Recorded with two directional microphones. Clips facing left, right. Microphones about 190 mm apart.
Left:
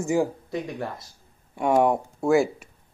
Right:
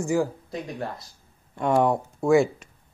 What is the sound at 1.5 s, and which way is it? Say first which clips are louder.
Speech: left 1 dB; 15° left (ahead or behind).